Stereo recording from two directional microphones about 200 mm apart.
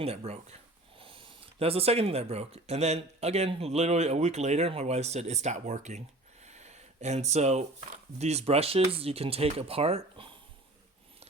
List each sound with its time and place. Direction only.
0.0 s speech: 30° right (ahead or behind)
6.4 s a sound: 35° right (ahead or behind)
8.2 s speech: 30° right (ahead or behind)